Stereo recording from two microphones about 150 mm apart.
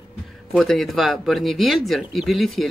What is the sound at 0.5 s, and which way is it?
Speech, centre (ahead or behind).